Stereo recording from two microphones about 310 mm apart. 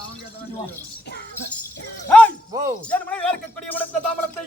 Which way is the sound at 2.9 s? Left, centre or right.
Centre.